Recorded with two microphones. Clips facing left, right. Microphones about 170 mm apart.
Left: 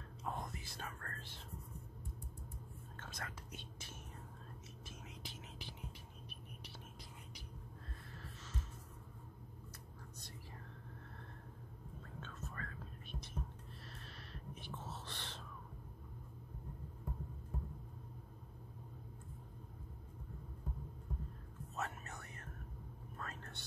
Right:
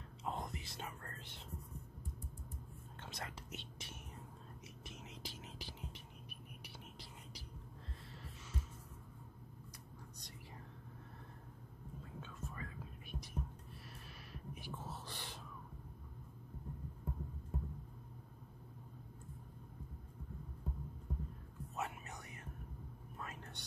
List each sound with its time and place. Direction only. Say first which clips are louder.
0.2 s whispering: right 1 dB; 20° right (ahead or behind)
3.0 s speech: right 1 dB; 25° right (ahead or behind)
5.2 s whispering: right 1 dB; 35° right (ahead or behind)
12.2 s whispering: even; 10° right (ahead or behind)
14.0 s a sound: right 2 dB; 10° right (ahead or behind)
21.7 s whispering: even; 15° right (ahead or behind)
23.1 s a sound: even; 15° right (ahead or behind)